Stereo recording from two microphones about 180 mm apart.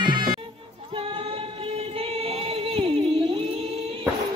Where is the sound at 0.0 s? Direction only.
25° right (ahead or behind).